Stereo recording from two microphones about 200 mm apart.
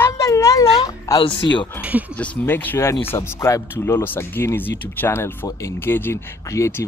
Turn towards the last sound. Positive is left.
turn(degrees=15)  # may be behind; listen again after turning